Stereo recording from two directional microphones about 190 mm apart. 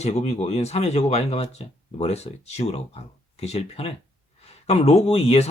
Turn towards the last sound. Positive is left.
turn(degrees=35)  # may be behind; listen again after turning